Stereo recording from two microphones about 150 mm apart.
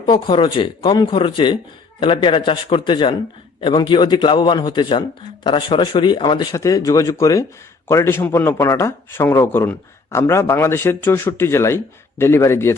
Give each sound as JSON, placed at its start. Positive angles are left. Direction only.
{"t": 0.0, "sound": "a man's voice", "side_deg": 30}